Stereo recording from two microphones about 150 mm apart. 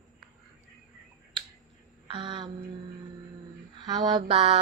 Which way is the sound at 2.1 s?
35° right (ahead or behind).